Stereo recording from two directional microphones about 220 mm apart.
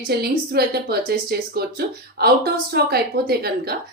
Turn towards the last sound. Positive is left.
turn(degrees=-45)  # may be behind; listen again after turning